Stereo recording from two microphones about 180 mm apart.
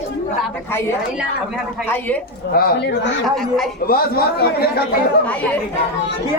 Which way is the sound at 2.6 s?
60° left (ahead or behind).